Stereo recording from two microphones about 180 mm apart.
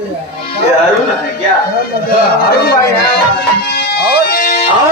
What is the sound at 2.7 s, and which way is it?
Music, 60° left (ahead or behind).